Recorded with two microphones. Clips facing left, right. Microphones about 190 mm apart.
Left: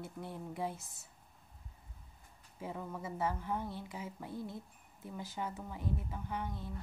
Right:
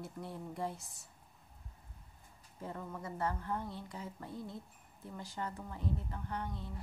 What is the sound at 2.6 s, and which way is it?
Speech, 5° left (ahead or behind).